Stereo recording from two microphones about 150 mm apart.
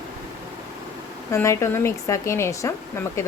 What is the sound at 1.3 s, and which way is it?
Speech, 20° left (ahead or behind).